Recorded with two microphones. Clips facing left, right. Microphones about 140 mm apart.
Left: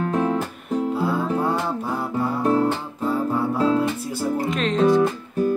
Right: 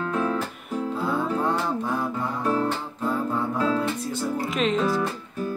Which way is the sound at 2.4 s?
30° left (ahead or behind).